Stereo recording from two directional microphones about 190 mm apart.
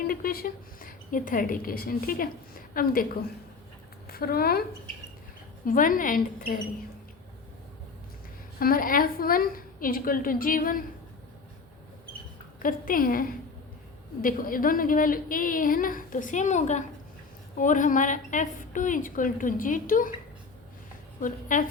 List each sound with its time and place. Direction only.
0.1 s a woman's voice: 50° left (ahead or behind)
5.6 s a woman's voice: 45° left (ahead or behind)
8.5 s a woman's voice: 50° left (ahead or behind)
12.5 s a woman's voice: 45° left (ahead or behind)
21.2 s a woman's voice: 45° left (ahead or behind)